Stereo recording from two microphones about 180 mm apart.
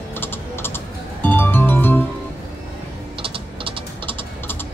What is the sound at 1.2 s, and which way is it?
Music, 10° left (ahead or behind).